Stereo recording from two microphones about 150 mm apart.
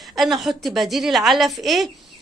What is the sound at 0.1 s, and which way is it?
A woman's voice, centre (ahead or behind).